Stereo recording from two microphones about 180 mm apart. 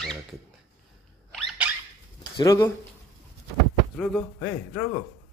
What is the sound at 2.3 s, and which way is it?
Speech, 20° left (ahead or behind).